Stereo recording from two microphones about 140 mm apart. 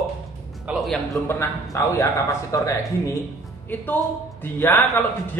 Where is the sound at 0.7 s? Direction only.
Centre (ahead or behind).